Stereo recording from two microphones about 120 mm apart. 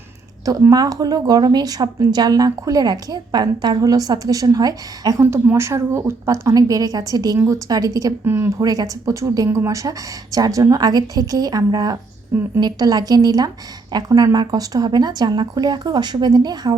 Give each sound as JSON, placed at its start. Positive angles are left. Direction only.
{"t": 0.7, "sound": "a woman's voice", "side_deg": -30}
{"t": 8.2, "sound": "a woman's voice", "side_deg": -20}